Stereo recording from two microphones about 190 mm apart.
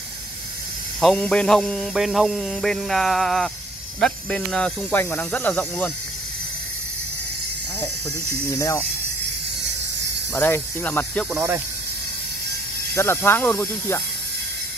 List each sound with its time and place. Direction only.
1.0 s a sound: 5° left (ahead or behind)
4.0 s speech: 5° left (ahead or behind)
8.5 s speech: 15° left (ahead or behind)
10.3 s speech: 10° left (ahead or behind)
11.3 s speech: 10° right (ahead or behind)
12.9 s speech: 15° left (ahead or behind)